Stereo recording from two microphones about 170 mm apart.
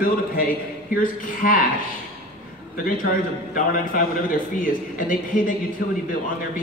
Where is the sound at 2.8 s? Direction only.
55° left (ahead or behind).